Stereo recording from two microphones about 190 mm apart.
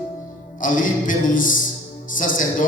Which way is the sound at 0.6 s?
45° left (ahead or behind).